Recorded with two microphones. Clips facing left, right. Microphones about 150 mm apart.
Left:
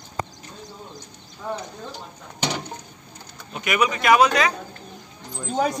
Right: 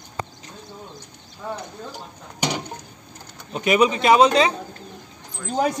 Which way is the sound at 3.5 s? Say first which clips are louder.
Right 5 dB; 30° right (ahead or behind).